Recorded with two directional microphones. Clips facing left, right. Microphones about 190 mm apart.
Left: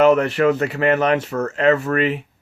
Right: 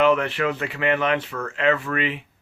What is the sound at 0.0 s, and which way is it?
Speech, 40° left (ahead or behind).